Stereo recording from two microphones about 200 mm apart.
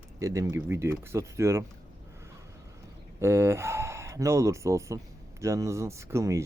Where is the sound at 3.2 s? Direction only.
15° right (ahead or behind).